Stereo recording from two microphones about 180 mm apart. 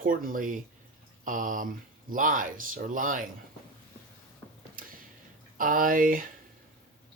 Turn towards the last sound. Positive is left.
turn(degrees=-50)  # may be behind; listen again after turning